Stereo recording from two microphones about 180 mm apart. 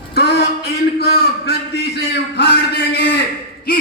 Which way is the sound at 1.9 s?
75° left (ahead or behind).